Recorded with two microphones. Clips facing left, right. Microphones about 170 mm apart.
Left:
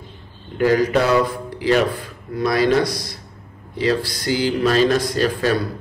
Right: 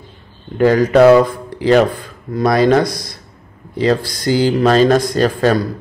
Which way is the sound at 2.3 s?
45° right (ahead or behind).